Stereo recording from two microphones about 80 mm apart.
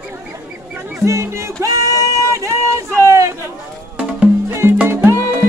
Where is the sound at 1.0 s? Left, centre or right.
Right.